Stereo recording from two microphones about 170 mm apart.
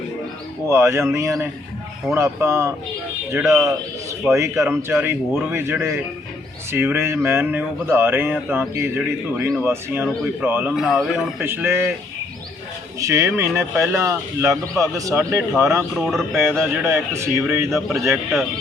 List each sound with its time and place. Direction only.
0.7 s speech: 15° right (ahead or behind)
13.0 s speech: 15° right (ahead or behind)
16.0 s speech: centre (ahead or behind)
16.3 s speech: 15° right (ahead or behind)